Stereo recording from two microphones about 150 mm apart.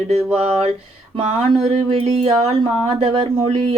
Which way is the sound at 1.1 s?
40° right (ahead or behind).